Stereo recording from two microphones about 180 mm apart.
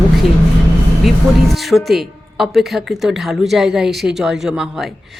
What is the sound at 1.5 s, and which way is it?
Speech, centre (ahead or behind).